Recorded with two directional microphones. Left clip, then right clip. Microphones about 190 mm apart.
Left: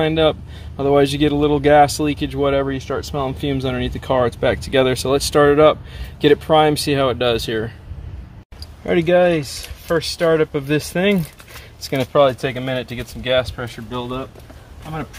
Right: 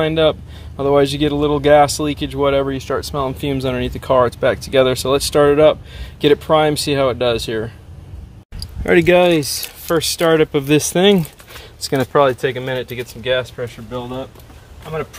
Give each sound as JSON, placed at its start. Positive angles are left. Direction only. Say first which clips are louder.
{"t": 0.0, "sound": "speech", "louder": "right 1 dB", "side_deg": -20}
{"t": 8.8, "sound": "speech", "louder": "right 3 dB", "side_deg": -45}
{"t": 12.1, "sound": "speech", "louder": "even", "side_deg": -15}